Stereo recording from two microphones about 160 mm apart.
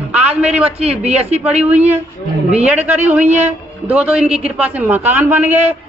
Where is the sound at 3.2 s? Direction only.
45° right (ahead or behind).